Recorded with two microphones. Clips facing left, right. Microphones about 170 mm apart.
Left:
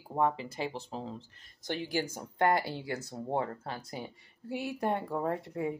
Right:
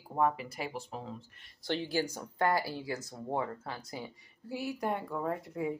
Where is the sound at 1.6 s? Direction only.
15° left (ahead or behind).